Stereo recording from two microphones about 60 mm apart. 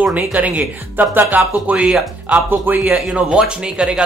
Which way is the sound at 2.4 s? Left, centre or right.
Right.